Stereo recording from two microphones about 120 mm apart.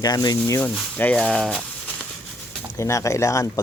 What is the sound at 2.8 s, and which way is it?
Speech, 25° left (ahead or behind).